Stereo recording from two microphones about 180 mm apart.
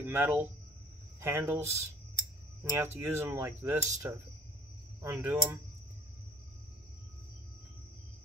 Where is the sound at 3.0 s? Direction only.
15° right (ahead or behind).